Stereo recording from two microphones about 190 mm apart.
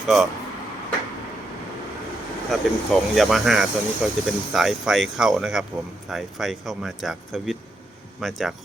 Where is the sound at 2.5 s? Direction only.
Centre (ahead or behind).